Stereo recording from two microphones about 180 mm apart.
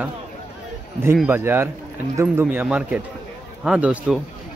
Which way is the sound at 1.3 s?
10° right (ahead or behind).